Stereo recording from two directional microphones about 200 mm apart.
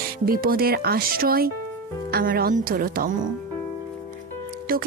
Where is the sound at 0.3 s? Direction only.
50° right (ahead or behind).